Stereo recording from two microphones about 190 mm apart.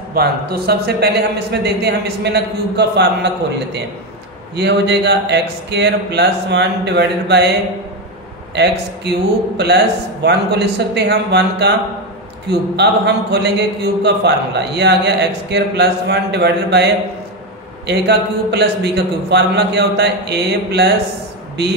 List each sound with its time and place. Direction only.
0.1 s a man's voice: 55° right (ahead or behind)
8.6 s a man's voice: 60° right (ahead or behind)
10.2 s a man's voice: 60° right (ahead or behind)